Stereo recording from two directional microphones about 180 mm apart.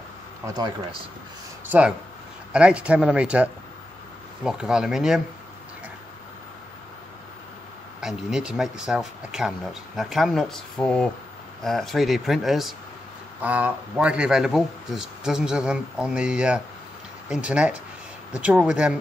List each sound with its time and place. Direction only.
1.7 s a man's voice: 5° right (ahead or behind)
8.0 s a man's voice: centre (ahead or behind)